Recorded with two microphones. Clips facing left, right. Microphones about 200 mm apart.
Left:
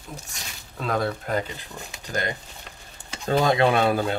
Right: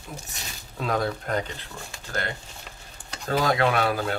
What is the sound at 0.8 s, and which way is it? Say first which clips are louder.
Speech: left 1 dB; centre (ahead or behind).